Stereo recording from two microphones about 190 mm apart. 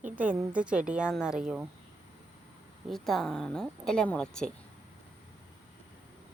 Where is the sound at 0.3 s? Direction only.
5° right (ahead or behind).